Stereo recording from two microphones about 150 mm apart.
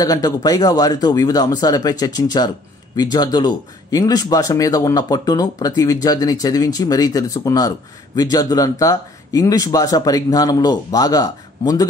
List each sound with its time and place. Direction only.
0.0 s speech: 25° left (ahead or behind)